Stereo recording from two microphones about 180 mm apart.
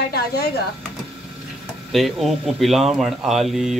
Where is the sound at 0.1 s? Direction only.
60° left (ahead or behind).